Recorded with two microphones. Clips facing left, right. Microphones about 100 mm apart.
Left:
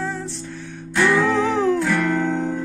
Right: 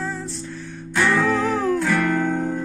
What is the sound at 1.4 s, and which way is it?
Music, 70° left (ahead or behind).